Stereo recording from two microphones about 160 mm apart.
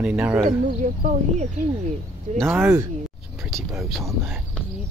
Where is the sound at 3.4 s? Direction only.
Centre (ahead or behind).